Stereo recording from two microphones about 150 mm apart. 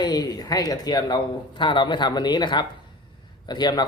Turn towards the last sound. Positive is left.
turn(degrees=30)  # may be behind; listen again after turning